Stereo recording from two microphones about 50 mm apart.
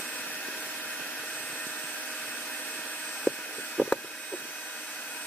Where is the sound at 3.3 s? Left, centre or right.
Left.